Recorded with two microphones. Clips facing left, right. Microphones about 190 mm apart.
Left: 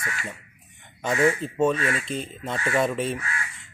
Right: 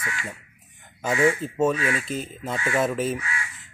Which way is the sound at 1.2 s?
5° right (ahead or behind).